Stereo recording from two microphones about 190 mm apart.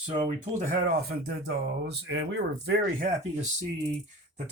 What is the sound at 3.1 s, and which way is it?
Speech, 40° right (ahead or behind).